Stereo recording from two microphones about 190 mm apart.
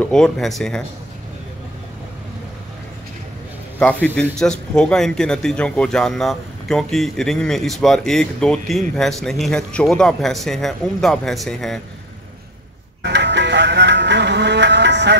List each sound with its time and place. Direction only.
0.0 s a man's voice: 5° left (ahead or behind)
3.8 s a man's voice: 10° left (ahead or behind)
13.0 s music: 65° right (ahead or behind)